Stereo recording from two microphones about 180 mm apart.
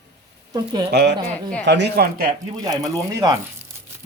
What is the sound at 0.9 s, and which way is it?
Speech, 70° right (ahead or behind).